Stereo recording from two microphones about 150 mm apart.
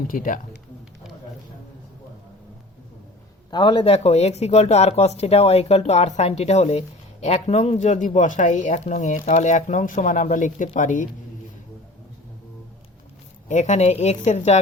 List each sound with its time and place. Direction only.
0.1 s speech: 65° left (ahead or behind)
3.5 s speech: 30° left (ahead or behind); by 11.1 s 60° left (ahead or behind)
13.5 s speech: 55° left (ahead or behind)